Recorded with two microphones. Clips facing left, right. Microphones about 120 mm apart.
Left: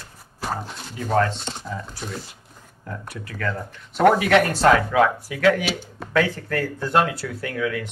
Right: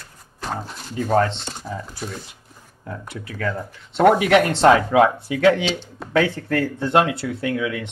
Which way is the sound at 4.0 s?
20° right (ahead or behind).